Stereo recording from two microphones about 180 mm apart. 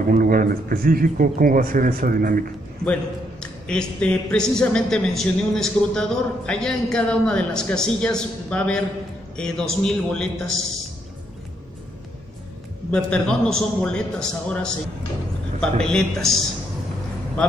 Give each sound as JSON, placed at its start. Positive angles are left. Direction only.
{"t": 0.1, "sound": "speech", "side_deg": -50}
{"t": 2.8, "sound": "a man's voice", "side_deg": 5}
{"t": 12.9, "sound": "a man's voice", "side_deg": 5}